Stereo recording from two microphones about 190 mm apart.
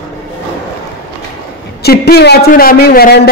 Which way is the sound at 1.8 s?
55° left (ahead or behind).